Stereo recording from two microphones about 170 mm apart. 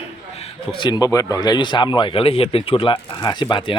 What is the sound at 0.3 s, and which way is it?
Speech, 35° left (ahead or behind).